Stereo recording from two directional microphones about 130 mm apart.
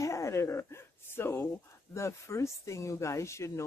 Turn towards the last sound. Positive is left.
turn(degrees=20)  # may be behind; listen again after turning